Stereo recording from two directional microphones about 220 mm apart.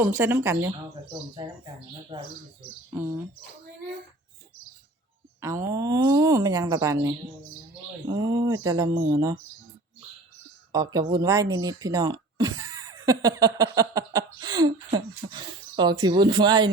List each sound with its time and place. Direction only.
0.0 s a woman's voice: 10° right (ahead or behind)
2.9 s a woman's voice: 10° right (ahead or behind)
5.4 s a woman's voice: 15° right (ahead or behind)
10.7 s speech: 15° right (ahead or behind)